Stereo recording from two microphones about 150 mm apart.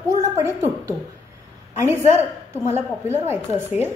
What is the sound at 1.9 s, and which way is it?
A woman's voice, 15° right (ahead or behind).